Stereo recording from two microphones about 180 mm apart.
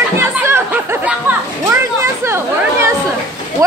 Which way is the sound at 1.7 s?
15° right (ahead or behind).